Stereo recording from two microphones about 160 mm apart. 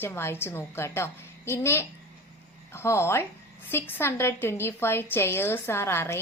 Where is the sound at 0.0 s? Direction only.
15° left (ahead or behind).